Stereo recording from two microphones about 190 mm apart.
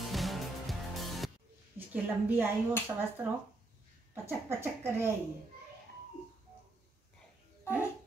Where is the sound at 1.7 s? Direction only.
10° right (ahead or behind).